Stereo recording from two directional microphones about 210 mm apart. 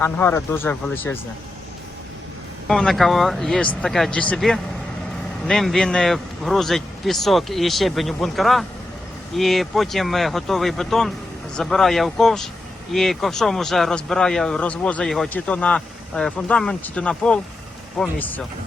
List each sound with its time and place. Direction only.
0.0 s speech: 10° left (ahead or behind)
2.6 s speech: centre (ahead or behind)